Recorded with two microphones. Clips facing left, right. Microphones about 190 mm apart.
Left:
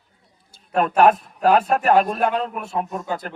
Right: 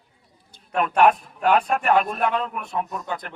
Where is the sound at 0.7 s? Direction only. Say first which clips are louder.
Left 2 dB; 40° left (ahead or behind).